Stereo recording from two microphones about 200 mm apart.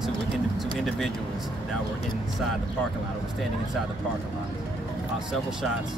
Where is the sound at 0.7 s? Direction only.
Centre (ahead or behind).